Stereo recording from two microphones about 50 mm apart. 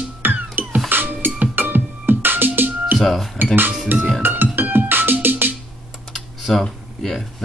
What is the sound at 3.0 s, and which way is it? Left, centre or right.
Speech, centre.